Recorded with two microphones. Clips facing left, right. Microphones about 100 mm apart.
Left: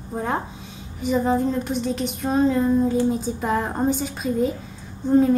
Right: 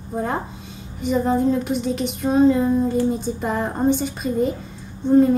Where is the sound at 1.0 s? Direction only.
Centre (ahead or behind).